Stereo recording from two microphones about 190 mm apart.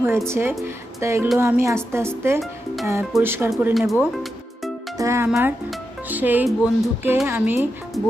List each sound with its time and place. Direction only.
0.0 s a woman's voice: 10° right (ahead or behind)
4.9 s a woman's voice: 15° right (ahead or behind)